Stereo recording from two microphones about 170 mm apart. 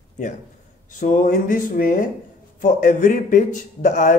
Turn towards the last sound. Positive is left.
turn(degrees=45)  # may be behind; listen again after turning